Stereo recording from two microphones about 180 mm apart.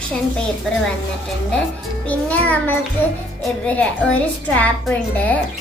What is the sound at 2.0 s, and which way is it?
A woman's voice, 10° left (ahead or behind).